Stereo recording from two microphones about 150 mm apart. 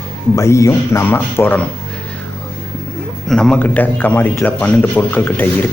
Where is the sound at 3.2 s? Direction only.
5° left (ahead or behind).